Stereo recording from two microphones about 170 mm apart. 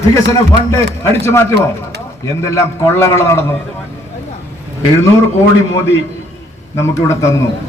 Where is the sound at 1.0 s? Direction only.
15° left (ahead or behind).